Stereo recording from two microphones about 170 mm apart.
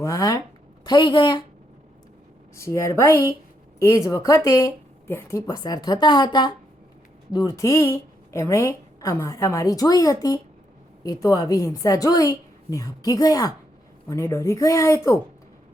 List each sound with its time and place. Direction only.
0.0 s a woman's voice: 20° left (ahead or behind)
2.6 s a woman's voice: 15° left (ahead or behind)